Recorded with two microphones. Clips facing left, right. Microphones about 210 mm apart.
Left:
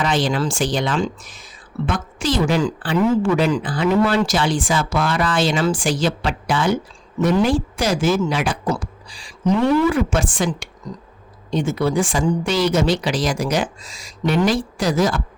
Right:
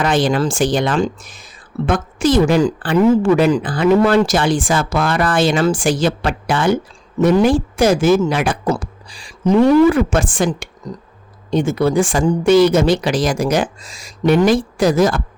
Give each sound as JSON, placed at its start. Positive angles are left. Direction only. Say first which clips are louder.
{"t": 0.0, "sound": "a woman's voice", "louder": "right 4 dB", "side_deg": -50}